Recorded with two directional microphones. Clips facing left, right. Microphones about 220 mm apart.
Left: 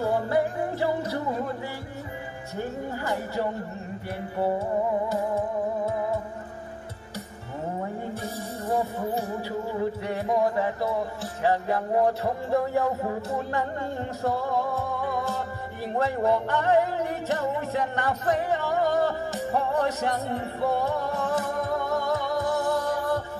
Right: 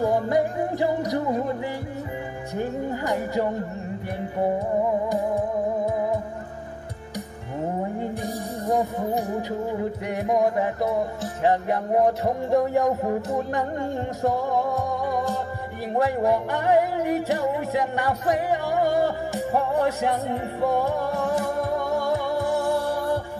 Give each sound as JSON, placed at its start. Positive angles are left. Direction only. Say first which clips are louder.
{"t": 0.0, "sound": "music", "louder": "right 3 dB", "side_deg": -15}
{"t": 2.5, "sound": "speech", "louder": "right 4 dB", "side_deg": -15}
{"t": 8.1, "sound": "music", "louder": "right 4 dB", "side_deg": -15}
{"t": 14.2, "sound": "music", "louder": "right 3 dB", "side_deg": -15}